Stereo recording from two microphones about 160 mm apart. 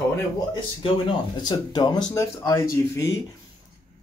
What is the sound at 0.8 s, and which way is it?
Speech, 30° left (ahead or behind).